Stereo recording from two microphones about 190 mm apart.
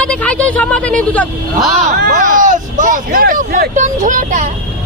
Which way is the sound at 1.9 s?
45° right (ahead or behind).